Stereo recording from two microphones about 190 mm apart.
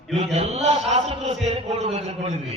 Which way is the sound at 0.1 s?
35° right (ahead or behind).